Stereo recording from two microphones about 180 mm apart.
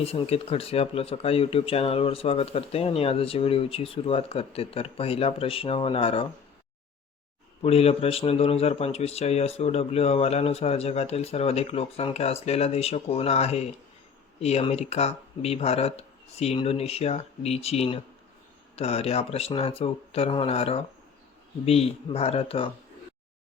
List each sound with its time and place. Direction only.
0.0 s speech: 35° left (ahead or behind)
7.6 s speech: 35° left (ahead or behind)